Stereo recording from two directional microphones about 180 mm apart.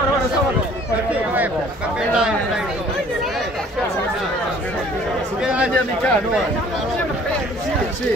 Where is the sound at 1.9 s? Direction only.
5° right (ahead or behind).